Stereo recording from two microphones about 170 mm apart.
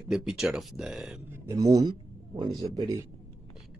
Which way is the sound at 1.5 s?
25° right (ahead or behind).